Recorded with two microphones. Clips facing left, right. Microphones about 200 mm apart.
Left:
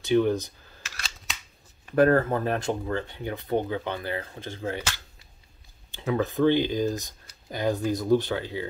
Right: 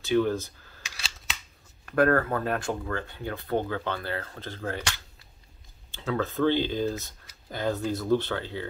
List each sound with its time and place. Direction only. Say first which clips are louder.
0.0 s speech: left 2 dB; 20° left (ahead or behind)
1.9 s speech: left 3 dB; 20° left (ahead or behind)